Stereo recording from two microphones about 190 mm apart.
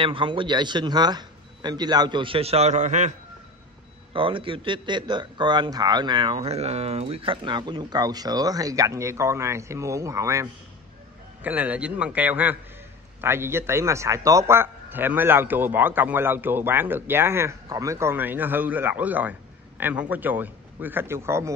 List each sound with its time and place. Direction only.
0.0 s speech: 25° right (ahead or behind)
4.1 s a man's voice: 25° right (ahead or behind)